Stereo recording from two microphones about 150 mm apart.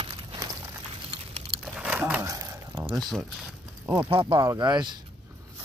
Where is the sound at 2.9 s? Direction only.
Centre (ahead or behind).